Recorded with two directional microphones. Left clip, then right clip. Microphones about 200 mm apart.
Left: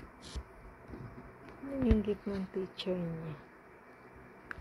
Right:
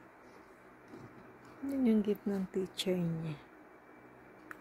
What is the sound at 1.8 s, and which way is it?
Speech, 35° right (ahead or behind).